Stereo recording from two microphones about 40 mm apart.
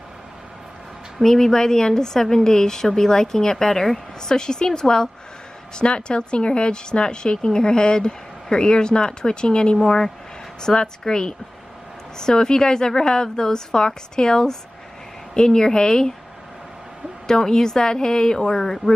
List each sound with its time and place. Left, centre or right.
1.2 s a woman's voice: centre
17.3 s a woman's voice: centre